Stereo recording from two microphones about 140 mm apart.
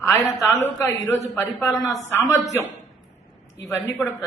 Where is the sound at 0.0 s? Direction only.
20° left (ahead or behind).